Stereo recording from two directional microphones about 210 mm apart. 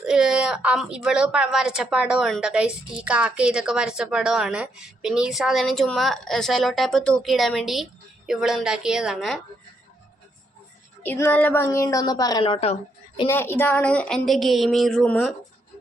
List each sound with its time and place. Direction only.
0.0 s a woman's voice: 5° right (ahead or behind)
11.0 s a woman's voice: 10° left (ahead or behind); by 13.2 s 30° left (ahead or behind)
13.2 s a woman's voice: 10° left (ahead or behind)